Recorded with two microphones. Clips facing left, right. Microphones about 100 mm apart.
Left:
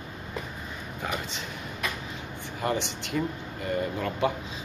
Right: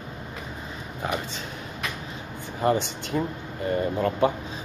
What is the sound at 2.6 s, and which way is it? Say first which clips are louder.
Speech: right 6 dB; 30° right (ahead or behind).